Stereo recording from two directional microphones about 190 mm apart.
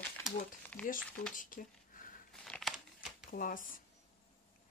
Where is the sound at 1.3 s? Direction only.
45° left (ahead or behind).